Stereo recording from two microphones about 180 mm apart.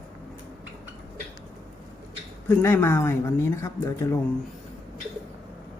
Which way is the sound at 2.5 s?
10° left (ahead or behind).